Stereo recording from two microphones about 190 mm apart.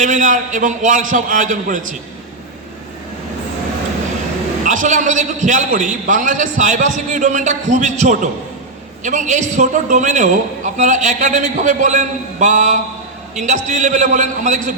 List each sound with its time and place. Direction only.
0.0 s a man's voice: 40° right (ahead or behind)
4.6 s a man's voice: 45° right (ahead or behind)